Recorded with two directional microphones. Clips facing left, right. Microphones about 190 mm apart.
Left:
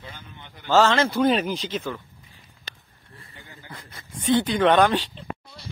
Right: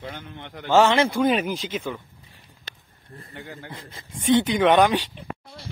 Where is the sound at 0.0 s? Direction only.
65° right (ahead or behind); by 0.7 s 80° right.